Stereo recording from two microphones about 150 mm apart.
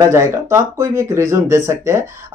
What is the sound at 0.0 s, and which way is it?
Speech, 20° right (ahead or behind).